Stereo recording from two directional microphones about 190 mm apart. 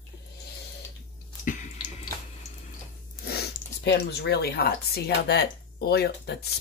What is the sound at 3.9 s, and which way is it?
Speech, 60° left (ahead or behind).